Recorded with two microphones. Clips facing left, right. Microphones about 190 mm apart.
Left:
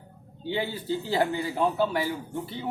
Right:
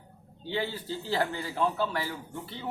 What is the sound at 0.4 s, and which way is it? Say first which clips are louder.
Speech: left 3 dB; 15° left (ahead or behind).